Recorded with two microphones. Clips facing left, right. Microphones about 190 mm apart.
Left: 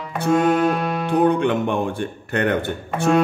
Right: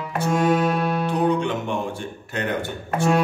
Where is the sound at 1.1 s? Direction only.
55° left (ahead or behind).